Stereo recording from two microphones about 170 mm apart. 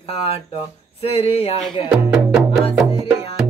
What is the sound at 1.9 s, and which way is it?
Music, centre (ahead or behind).